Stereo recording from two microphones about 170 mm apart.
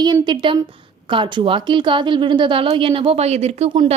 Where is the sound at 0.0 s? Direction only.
25° right (ahead or behind).